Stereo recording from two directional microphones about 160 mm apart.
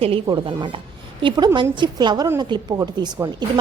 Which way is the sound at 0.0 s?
35° right (ahead or behind).